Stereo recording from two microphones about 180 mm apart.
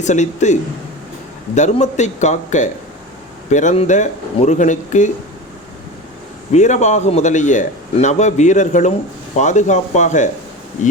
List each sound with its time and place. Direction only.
0.0 s a man's voice: 40° left (ahead or behind)
6.5 s a man's voice: 40° left (ahead or behind)